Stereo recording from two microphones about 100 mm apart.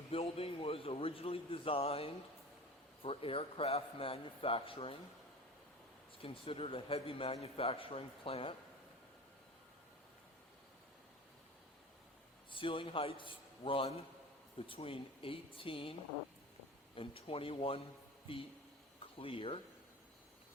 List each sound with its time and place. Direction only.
0.1 s a man's voice: 75° left (ahead or behind)
3.0 s a man's voice: 70° left (ahead or behind)
6.2 s a man's voice: 70° left (ahead or behind)
7.4 s a man's voice: 75° left (ahead or behind)
12.5 s a man's voice: 60° left (ahead or behind)